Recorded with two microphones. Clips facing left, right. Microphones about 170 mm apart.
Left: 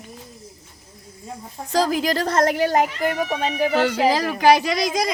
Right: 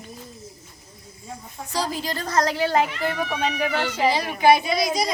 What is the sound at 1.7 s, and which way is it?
A woman's voice, 90° left.